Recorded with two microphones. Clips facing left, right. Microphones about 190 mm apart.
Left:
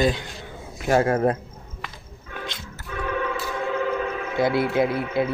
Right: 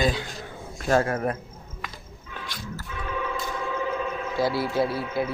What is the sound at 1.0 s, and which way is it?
Speech, 30° left (ahead or behind).